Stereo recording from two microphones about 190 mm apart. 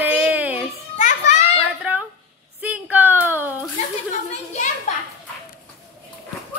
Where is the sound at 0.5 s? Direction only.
40° left (ahead or behind).